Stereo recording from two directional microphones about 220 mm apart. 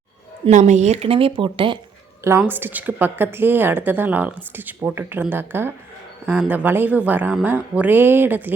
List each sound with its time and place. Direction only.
0.4 s speech: 30° right (ahead or behind)
2.4 s a woman's voice: 10° right (ahead or behind)